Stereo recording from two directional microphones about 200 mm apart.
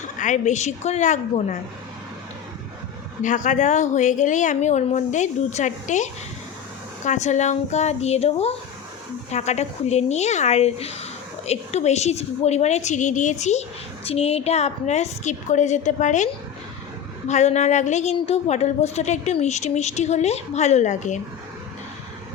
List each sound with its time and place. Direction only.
0.2 s a woman's voice: 40° left (ahead or behind)
3.2 s a woman's voice: 40° left (ahead or behind)